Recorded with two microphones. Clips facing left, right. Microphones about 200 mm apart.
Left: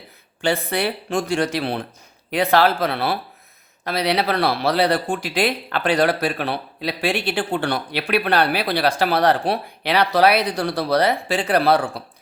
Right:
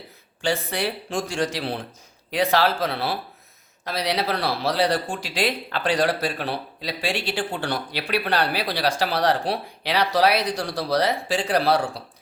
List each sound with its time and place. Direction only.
0.4 s speech: 60° left (ahead or behind)